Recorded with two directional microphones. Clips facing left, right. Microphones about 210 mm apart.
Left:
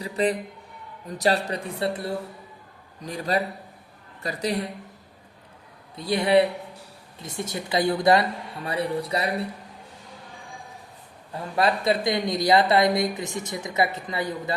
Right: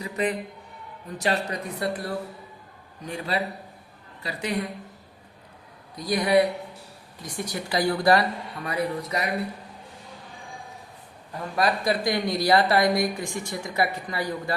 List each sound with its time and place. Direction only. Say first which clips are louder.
0.0 s a sound: left 3 dB; 35° left (ahead or behind)
1.2 s speech: left 3 dB; 35° left (ahead or behind)
3.0 s a man's voice: left 2 dB; 40° left (ahead or behind)
6.0 s speech: left 1 dB; 25° left (ahead or behind)
11.3 s speech: left 1 dB; 25° left (ahead or behind)